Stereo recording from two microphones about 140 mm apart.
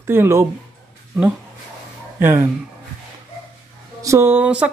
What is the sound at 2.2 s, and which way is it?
Speech, 15° right (ahead or behind).